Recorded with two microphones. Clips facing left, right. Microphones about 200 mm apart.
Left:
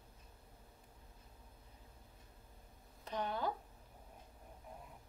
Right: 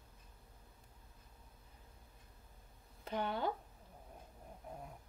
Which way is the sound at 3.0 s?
30° right (ahead or behind).